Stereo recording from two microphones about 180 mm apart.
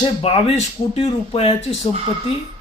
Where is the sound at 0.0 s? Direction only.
35° left (ahead or behind).